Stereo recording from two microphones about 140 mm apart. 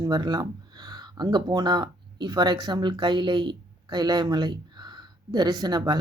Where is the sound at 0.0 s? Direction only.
30° right (ahead or behind).